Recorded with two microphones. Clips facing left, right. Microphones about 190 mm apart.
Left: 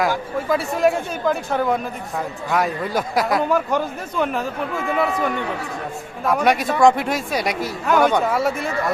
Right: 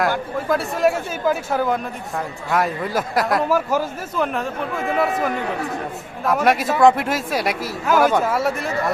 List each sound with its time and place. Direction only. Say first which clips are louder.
0.3 s speech: even; centre (ahead or behind)